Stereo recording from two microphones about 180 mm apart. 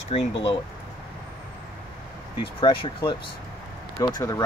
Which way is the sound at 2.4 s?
30° left (ahead or behind).